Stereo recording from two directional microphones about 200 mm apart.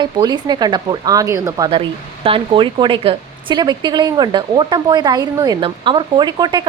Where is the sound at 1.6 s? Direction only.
25° right (ahead or behind).